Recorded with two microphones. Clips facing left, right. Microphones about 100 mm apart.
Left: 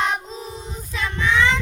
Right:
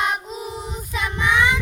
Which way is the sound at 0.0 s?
10° right (ahead or behind).